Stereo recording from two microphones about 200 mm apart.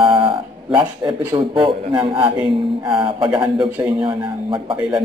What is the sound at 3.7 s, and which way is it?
Speech, 10° right (ahead or behind).